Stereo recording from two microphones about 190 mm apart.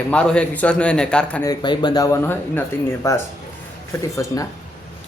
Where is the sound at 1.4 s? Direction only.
20° left (ahead or behind).